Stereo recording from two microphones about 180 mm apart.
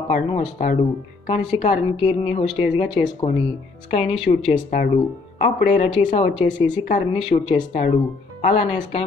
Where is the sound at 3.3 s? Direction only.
35° left (ahead or behind).